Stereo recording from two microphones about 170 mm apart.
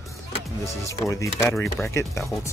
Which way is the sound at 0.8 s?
20° left (ahead or behind).